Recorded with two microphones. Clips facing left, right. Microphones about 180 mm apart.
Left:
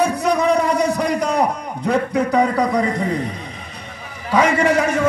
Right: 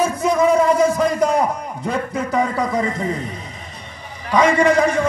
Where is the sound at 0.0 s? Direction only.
65° left (ahead or behind).